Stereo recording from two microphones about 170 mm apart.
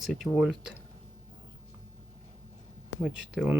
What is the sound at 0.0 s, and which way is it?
Speech, centre (ahead or behind).